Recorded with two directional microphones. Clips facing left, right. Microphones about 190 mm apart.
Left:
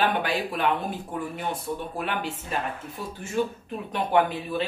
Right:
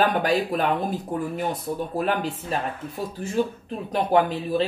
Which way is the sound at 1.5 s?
40° right (ahead or behind).